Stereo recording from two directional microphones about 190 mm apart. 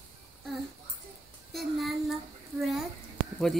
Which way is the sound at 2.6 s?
Centre (ahead or behind).